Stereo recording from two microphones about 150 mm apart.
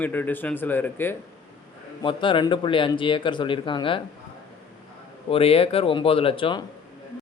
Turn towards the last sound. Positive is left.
turn(degrees=35)  # may be behind; listen again after turning